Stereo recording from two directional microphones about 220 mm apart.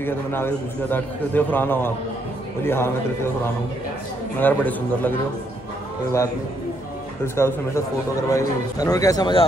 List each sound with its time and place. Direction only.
0.0 s a man's voice: 10° left (ahead or behind)
4.4 s a man's voice: 10° left (ahead or behind)
7.3 s a man's voice: 10° left (ahead or behind)